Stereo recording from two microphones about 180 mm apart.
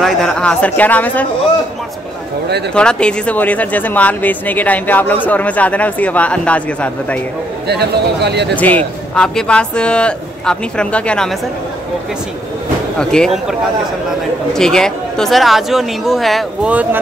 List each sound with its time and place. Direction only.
0.0 s speech: 5° left (ahead or behind)
2.7 s speech: 5° left (ahead or behind)
7.6 s speech: 65° right (ahead or behind)
8.5 s a man's voice: 10° left (ahead or behind)
13.1 s a man's voice: centre (ahead or behind)